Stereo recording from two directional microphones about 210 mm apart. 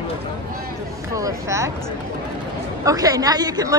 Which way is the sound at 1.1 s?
15° right (ahead or behind).